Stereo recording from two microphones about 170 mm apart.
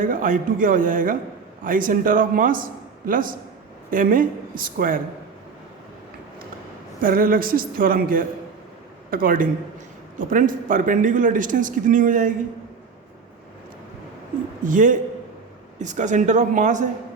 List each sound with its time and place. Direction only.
0.0 s a man's voice: 55° right (ahead or behind)
7.0 s a woman's voice: 55° right (ahead or behind)
14.6 s a man's voice: 50° right (ahead or behind)